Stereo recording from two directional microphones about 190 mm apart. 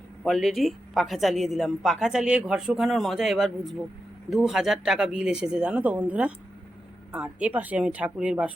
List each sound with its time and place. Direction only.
0.3 s speech: centre (ahead or behind)